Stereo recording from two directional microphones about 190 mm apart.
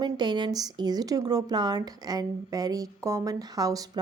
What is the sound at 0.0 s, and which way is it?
Speech, 25° right (ahead or behind).